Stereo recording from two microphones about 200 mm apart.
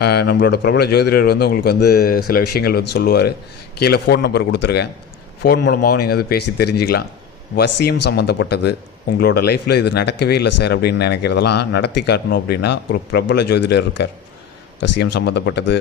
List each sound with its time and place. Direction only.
0.0 s a man's voice: 55° left (ahead or behind)